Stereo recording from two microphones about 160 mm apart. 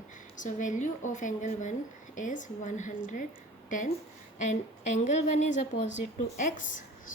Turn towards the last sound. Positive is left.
turn(degrees=55)  # may be behind; listen again after turning